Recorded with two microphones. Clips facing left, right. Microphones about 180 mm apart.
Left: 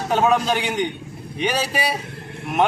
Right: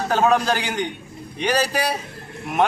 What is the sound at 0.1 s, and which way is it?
Speech, centre (ahead or behind).